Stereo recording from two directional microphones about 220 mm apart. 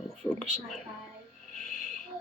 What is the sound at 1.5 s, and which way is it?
Frog, 30° right (ahead or behind).